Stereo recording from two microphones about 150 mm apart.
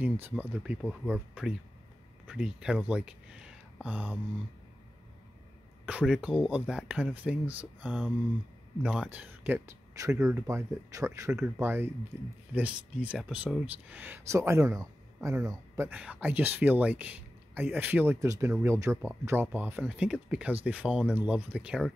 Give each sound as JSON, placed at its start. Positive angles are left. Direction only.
{"t": 0.0, "sound": "speech", "side_deg": -10}
{"t": 5.9, "sound": "speech", "side_deg": -5}
{"t": 15.9, "sound": "speech", "side_deg": -10}